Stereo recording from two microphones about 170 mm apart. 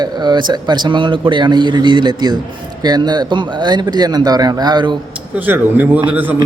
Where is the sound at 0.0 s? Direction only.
25° right (ahead or behind).